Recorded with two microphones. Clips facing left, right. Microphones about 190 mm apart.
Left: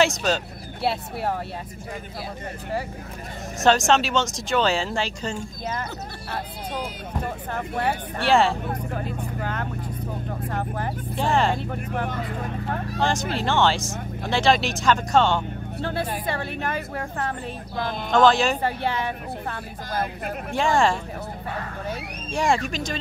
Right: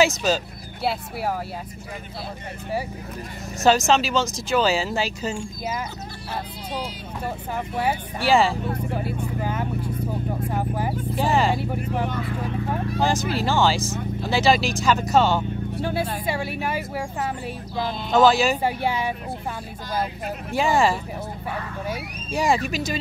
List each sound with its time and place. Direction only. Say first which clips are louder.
0.0 s speech: right 1 dB; centre (ahead or behind)
3.6 s speech: right 1 dB; centre (ahead or behind)
7.5 s speech: right 1 dB; 10° right (ahead or behind)
17.8 s speech: even; 50° left (ahead or behind)
18.1 s speech: right 1 dB; 5° right (ahead or behind)
20.5 s speech: right 1 dB; 5° right (ahead or behind)